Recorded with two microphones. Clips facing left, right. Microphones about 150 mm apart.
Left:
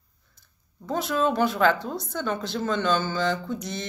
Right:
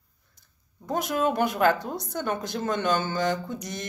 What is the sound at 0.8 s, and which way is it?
A woman's voice, 15° right (ahead or behind).